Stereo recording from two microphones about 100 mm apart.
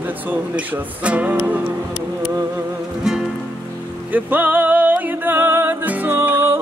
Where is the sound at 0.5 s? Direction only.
10° right (ahead or behind).